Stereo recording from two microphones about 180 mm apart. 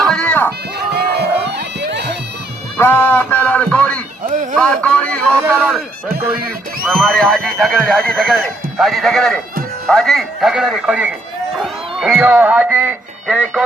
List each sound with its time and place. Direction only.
0.1 s a sound: 5° left (ahead or behind)
0.9 s music: 65° right (ahead or behind)
2.7 s music: 10° left (ahead or behind)
4.5 s a sound: 5° left (ahead or behind)
5.4 s speech: 10° right (ahead or behind)
6.8 s speech: 5° left (ahead or behind)
11.6 s run: centre (ahead or behind)
12.2 s speech: 10° right (ahead or behind)